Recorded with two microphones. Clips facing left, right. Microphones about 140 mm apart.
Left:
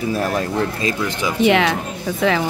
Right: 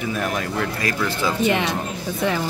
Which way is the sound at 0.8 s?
20° left (ahead or behind).